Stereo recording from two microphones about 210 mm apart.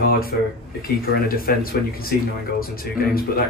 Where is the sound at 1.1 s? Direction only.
45° left (ahead or behind).